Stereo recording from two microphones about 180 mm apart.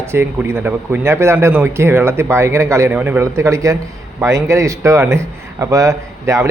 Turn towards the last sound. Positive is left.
turn(degrees=-15)  # may be behind; listen again after turning